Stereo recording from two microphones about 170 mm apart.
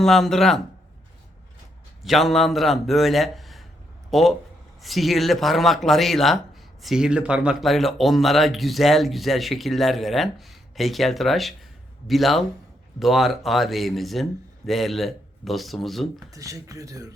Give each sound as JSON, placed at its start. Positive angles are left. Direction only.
{"t": 0.0, "sound": "speech", "side_deg": 0}
{"t": 2.0, "sound": "speech", "side_deg": 0}
{"t": 16.3, "sound": "a man's voice", "side_deg": -20}